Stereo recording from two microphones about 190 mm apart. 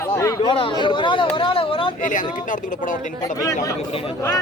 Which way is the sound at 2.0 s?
45° left (ahead or behind).